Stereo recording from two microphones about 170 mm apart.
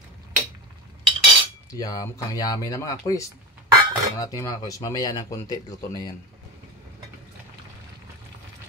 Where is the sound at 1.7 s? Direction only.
20° left (ahead or behind).